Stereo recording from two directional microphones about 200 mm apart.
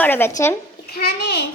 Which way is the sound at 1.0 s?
60° left (ahead or behind).